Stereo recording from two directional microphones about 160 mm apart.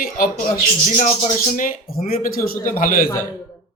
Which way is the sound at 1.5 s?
60° left (ahead or behind).